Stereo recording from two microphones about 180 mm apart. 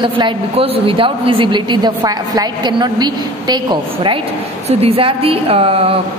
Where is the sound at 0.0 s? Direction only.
30° right (ahead or behind).